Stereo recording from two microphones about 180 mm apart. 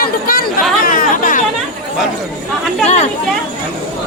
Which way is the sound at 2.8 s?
40° left (ahead or behind).